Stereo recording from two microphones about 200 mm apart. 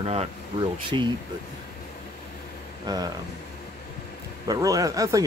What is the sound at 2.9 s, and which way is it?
Speech, 20° right (ahead or behind).